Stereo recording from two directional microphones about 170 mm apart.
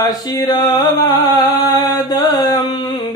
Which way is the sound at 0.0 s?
20° left (ahead or behind).